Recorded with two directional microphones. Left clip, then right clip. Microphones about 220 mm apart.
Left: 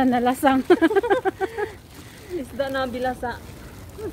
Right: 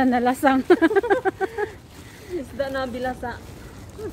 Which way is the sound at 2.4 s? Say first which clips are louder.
Left 1 dB; 35° left (ahead or behind).